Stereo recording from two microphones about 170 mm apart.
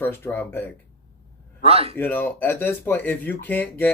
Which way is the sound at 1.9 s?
10° left (ahead or behind).